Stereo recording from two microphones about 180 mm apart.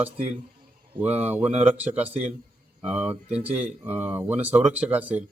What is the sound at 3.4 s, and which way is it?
Speech, 10° right (ahead or behind).